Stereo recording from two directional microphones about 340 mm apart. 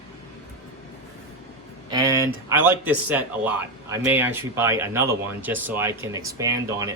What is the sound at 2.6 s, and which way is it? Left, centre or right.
Speech, centre.